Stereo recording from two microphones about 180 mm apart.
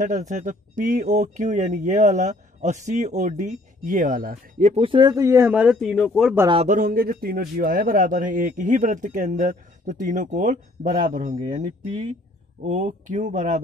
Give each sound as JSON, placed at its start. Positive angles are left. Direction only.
{"t": 0.0, "sound": "a man's voice", "side_deg": -45}
{"t": 4.7, "sound": "speech", "side_deg": -30}
{"t": 6.5, "sound": "a man's voice", "side_deg": -40}